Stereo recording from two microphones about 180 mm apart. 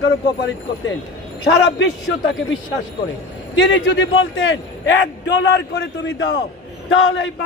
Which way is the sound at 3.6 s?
85° left.